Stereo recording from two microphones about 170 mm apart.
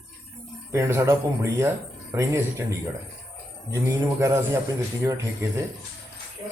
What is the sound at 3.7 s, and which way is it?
Speech, 20° right (ahead or behind).